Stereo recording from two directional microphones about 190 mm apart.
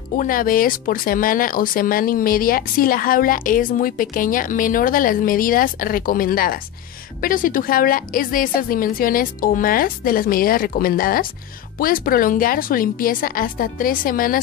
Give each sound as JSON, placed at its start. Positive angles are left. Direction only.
{"t": 0.2, "sound": "speech", "side_deg": 45}